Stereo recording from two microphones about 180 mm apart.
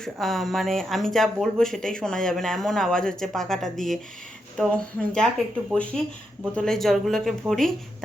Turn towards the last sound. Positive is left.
turn(degrees=0)  # may be behind; listen again after turning